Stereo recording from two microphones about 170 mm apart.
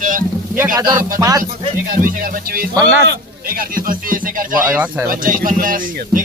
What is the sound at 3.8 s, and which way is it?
Speech, 55° right (ahead or behind).